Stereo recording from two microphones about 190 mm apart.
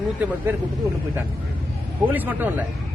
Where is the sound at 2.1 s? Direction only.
10° right (ahead or behind).